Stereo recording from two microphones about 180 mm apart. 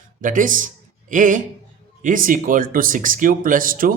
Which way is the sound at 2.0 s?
50° right (ahead or behind).